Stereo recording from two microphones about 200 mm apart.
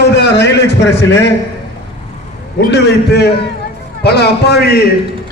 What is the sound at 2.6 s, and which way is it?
A man's voice, 55° left (ahead or behind).